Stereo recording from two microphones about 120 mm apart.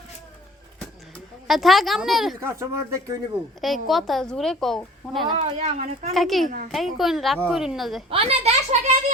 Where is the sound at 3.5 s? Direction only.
Centre (ahead or behind).